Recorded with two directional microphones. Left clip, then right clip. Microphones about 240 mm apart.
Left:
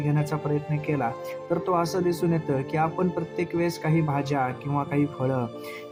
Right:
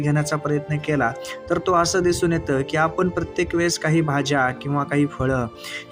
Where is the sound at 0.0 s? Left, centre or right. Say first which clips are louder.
Right 5 dB; centre.